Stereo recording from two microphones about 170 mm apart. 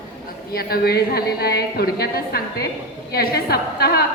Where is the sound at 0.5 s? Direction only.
65° left (ahead or behind).